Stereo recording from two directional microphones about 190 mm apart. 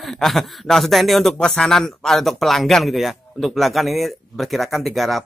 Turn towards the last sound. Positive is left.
turn(degrees=0)  # may be behind; listen again after turning